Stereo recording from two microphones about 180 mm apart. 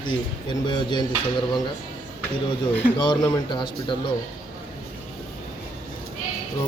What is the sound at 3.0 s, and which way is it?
Speech, 25° left (ahead or behind).